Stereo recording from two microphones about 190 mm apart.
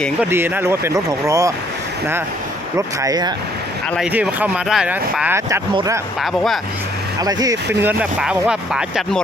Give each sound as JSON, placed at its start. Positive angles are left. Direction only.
{"t": 0.3, "sound": "speech", "side_deg": -10}
{"t": 2.7, "sound": "speech", "side_deg": -20}
{"t": 3.9, "sound": "speech", "side_deg": -5}
{"t": 7.2, "sound": "speech", "side_deg": -20}
{"t": 7.8, "sound": "speech", "side_deg": -10}